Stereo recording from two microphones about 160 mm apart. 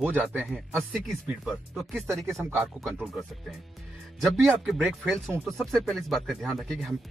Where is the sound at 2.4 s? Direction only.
15° right (ahead or behind).